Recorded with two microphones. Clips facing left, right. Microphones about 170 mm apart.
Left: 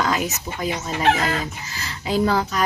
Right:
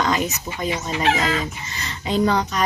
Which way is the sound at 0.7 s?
50° left (ahead or behind).